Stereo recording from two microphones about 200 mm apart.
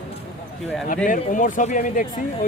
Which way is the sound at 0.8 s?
40° left (ahead or behind).